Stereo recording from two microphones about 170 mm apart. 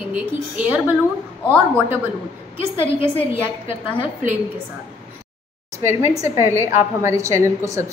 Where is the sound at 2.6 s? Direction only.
15° right (ahead or behind).